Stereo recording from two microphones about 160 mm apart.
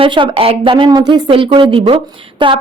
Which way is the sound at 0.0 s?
30° right (ahead or behind).